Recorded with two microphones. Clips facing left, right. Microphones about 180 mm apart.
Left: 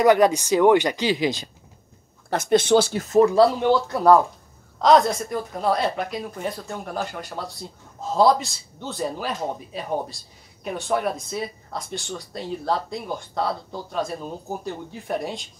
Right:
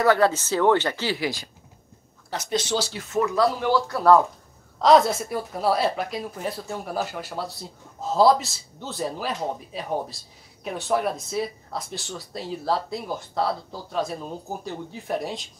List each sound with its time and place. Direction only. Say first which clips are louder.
0.0 s speech: left 3 dB; 15° left (ahead or behind)
2.2 s speech: left 8 dB; 55° left (ahead or behind); by 4.2 s 20° left (ahead or behind)
4.8 s speech: even; centre (ahead or behind)